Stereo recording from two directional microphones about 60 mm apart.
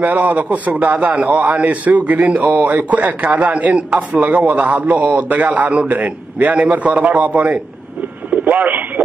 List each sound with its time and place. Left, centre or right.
0.0 s a man's voice: right
8.3 s radio: right